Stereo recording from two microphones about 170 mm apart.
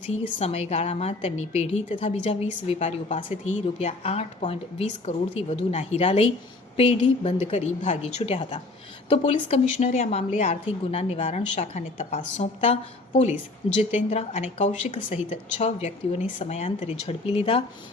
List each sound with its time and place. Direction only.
0.3 s a woman's voice: 35° left (ahead or behind)